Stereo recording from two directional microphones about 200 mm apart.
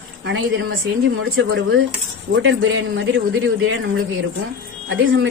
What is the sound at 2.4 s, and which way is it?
A man's voice, 70° right (ahead or behind).